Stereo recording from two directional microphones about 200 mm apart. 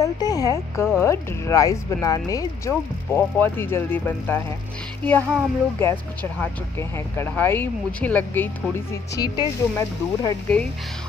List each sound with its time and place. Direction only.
0.0 s speech: 20° left (ahead or behind)